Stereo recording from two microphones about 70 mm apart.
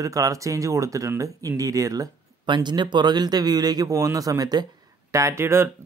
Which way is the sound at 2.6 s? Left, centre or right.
Right.